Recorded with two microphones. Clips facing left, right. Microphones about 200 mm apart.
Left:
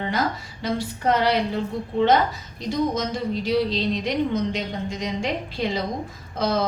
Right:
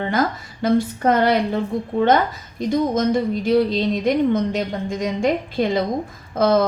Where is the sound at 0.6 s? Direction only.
50° right (ahead or behind).